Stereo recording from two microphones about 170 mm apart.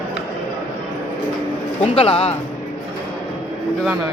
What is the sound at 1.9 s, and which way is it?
Speech, 35° left (ahead or behind).